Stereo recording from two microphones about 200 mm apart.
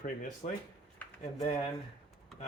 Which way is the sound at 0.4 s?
40° left (ahead or behind).